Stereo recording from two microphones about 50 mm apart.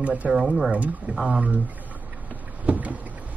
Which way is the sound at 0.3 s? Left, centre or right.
Centre.